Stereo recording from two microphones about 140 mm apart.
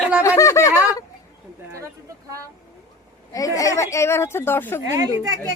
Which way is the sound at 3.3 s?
25° left (ahead or behind).